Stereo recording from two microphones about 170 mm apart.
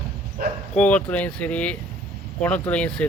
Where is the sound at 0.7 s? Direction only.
10° left (ahead or behind).